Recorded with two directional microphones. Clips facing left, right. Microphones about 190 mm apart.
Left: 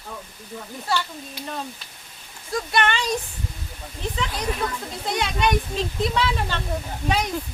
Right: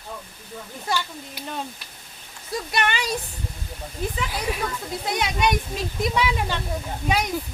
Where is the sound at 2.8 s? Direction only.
10° right (ahead or behind).